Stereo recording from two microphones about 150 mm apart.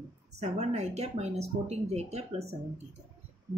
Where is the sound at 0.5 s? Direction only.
50° right (ahead or behind).